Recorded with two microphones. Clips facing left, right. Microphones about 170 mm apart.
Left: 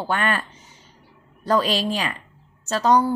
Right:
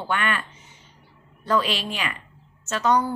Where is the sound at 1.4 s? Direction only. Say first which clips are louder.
Left 3 dB; 40° left (ahead or behind).